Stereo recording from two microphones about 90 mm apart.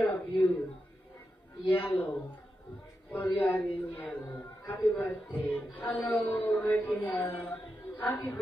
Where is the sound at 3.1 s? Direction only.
20° left (ahead or behind).